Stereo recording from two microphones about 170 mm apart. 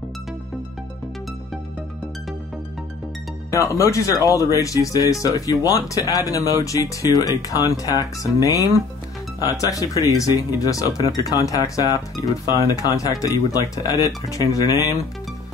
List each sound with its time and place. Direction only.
3.5 s speech: 20° left (ahead or behind)